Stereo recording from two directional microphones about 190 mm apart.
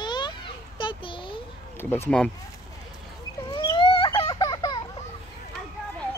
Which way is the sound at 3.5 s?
25° left (ahead or behind).